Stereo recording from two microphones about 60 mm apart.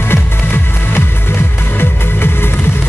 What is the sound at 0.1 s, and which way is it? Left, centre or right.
Music, left.